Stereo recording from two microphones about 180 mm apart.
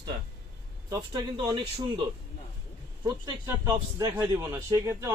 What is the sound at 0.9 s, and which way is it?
A man's voice, 25° right (ahead or behind).